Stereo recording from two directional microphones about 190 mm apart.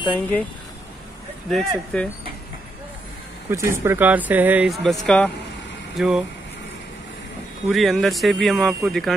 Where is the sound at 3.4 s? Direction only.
15° right (ahead or behind).